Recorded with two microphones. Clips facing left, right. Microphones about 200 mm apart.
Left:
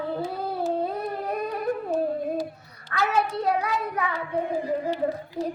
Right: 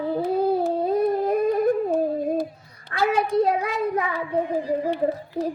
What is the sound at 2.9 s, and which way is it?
Child singing, 30° right (ahead or behind).